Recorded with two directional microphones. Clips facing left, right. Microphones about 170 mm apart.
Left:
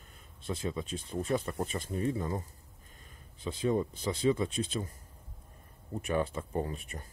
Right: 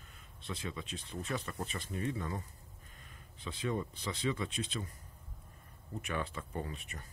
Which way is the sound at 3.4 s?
40° left (ahead or behind).